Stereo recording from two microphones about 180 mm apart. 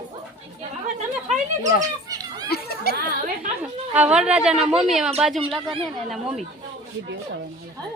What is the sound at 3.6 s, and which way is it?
Speech, 5° right (ahead or behind).